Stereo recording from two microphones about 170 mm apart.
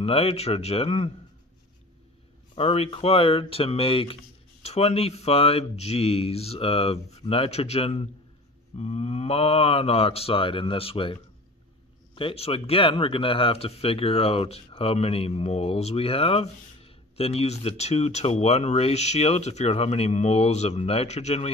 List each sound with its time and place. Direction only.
0.0 s speech: 35° left (ahead or behind)
2.5 s speech: 35° left (ahead or behind)
12.2 s speech: 35° left (ahead or behind)